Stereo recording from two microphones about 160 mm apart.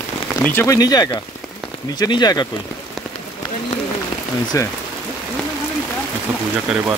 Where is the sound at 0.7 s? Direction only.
25° left (ahead or behind).